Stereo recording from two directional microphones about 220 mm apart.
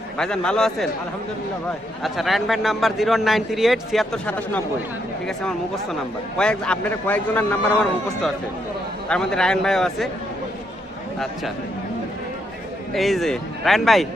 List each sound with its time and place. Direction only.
0.2 s a man's voice: 5° left (ahead or behind)
2.0 s a man's voice: centre (ahead or behind)
9.0 s a man's voice: 5° left (ahead or behind)
12.9 s a man's voice: centre (ahead or behind)